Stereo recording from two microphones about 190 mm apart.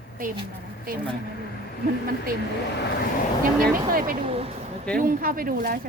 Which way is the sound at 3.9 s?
45° right (ahead or behind).